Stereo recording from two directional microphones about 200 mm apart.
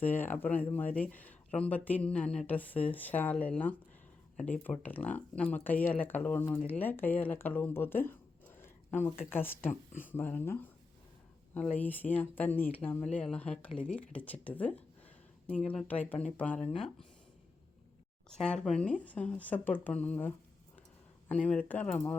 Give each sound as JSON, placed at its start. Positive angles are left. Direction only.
{"t": 0.0, "sound": "speech", "side_deg": 10}
{"t": 9.6, "sound": "speech", "side_deg": 40}
{"t": 10.1, "sound": "speech", "side_deg": 10}
{"t": 18.3, "sound": "speech", "side_deg": 5}